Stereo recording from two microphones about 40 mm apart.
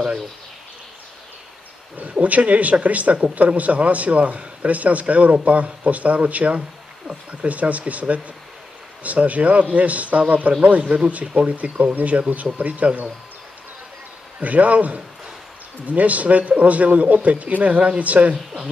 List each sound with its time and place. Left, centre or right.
2.0 s a man's voice: right
14.4 s a man's voice: right